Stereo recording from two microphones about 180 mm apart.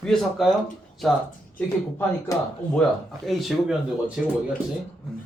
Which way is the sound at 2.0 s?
10° left (ahead or behind).